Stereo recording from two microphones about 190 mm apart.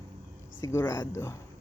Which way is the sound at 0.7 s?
10° left (ahead or behind).